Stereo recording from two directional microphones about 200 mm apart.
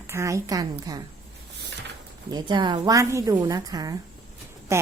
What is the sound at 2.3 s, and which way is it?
A woman's voice, 20° right (ahead or behind).